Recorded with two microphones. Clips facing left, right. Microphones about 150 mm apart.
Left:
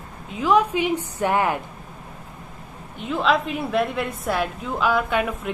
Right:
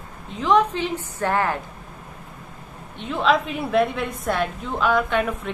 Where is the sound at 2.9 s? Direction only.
Centre (ahead or behind).